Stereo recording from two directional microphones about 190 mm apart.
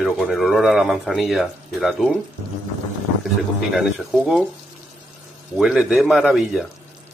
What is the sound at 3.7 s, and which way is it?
Speech, centre (ahead or behind).